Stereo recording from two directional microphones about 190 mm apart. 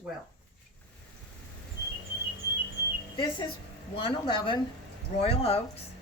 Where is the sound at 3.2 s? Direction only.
25° left (ahead or behind).